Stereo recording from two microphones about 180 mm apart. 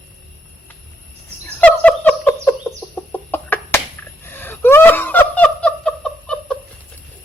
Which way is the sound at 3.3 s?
10° left (ahead or behind).